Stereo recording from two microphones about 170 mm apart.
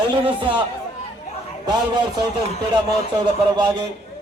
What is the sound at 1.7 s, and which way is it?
Speech, 25° right (ahead or behind).